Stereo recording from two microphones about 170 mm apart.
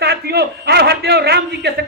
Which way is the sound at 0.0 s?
70° right (ahead or behind).